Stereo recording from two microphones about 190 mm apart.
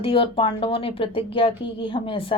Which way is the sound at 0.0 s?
30° left (ahead or behind).